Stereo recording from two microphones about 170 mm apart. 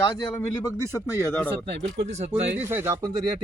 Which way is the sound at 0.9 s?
20° left (ahead or behind).